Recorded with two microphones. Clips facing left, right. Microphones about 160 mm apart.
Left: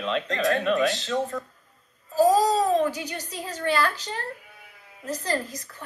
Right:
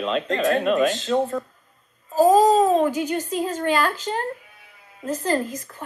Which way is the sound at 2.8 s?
45° right (ahead or behind).